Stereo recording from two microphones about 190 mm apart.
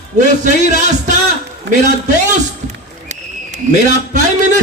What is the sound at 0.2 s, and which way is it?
Speech, 40° right (ahead or behind).